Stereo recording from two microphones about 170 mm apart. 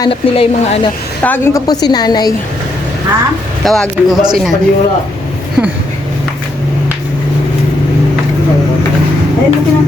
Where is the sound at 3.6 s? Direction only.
Centre (ahead or behind).